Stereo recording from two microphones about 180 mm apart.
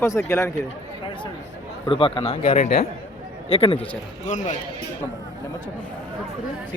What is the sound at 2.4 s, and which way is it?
A man's voice, 45° left (ahead or behind).